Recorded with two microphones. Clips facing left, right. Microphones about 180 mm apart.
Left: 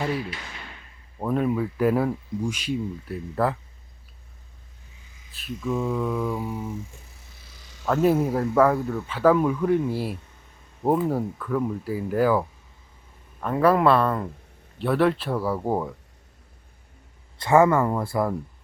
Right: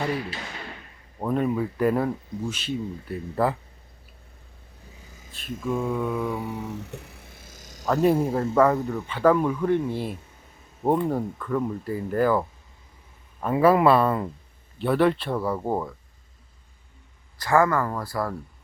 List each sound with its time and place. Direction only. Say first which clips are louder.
1.2 s speech: even; centre (ahead or behind)
3.1 s speech: right 1 dB; centre (ahead or behind)
5.5 s mantra: even; 50° right (ahead or behind)
5.7 s speech: left 1 dB; centre (ahead or behind)
6.5 s a sound: even; 70° right (ahead or behind); by 7.9 s 45° right (ahead or behind)
8.0 s speech: even; 5° left (ahead or behind)
13.4 s speech: right 1 dB; 5° right (ahead or behind)
17.4 s speech: left 3 dB; 25° left (ahead or behind)